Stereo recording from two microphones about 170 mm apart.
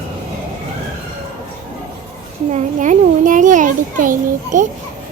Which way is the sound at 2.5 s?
50° right (ahead or behind).